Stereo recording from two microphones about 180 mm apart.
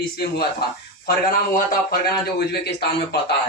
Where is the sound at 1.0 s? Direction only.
55° left (ahead or behind).